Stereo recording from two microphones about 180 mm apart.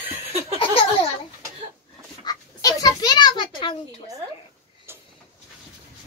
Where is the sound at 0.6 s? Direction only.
30° left (ahead or behind).